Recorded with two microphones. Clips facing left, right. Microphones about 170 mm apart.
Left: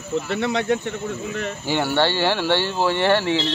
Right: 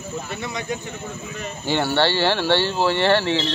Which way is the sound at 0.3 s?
65° left (ahead or behind).